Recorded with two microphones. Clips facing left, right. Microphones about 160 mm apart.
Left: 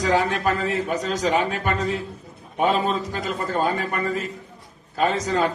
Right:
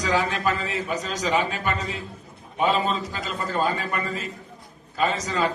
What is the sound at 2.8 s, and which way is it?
Speech, 50° left (ahead or behind).